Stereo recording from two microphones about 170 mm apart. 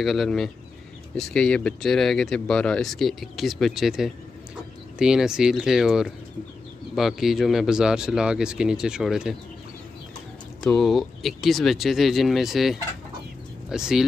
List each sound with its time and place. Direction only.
0.0 s speech: centre (ahead or behind)
10.6 s speech: centre (ahead or behind)